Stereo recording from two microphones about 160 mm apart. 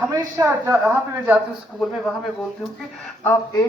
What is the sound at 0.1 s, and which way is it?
A man's voice, 20° right (ahead or behind).